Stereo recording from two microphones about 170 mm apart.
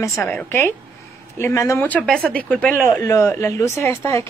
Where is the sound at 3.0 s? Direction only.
15° left (ahead or behind).